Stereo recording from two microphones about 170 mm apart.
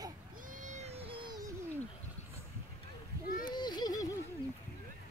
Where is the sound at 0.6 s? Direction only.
40° right (ahead or behind); by 1.4 s 25° right (ahead or behind).